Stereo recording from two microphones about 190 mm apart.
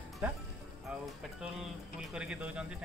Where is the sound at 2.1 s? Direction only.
5° right (ahead or behind).